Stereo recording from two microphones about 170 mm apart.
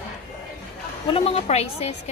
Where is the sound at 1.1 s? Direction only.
35° left (ahead or behind).